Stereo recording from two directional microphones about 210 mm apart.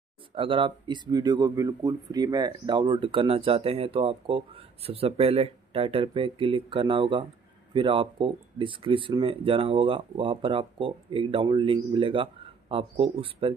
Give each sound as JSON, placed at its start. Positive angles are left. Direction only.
{"t": 0.3, "sound": "speech", "side_deg": -25}